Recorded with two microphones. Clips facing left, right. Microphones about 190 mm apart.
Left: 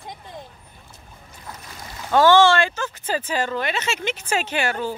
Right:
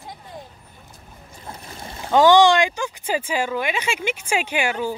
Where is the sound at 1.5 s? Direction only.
25° right (ahead or behind).